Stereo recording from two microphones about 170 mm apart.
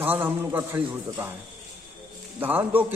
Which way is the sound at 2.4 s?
10° right (ahead or behind).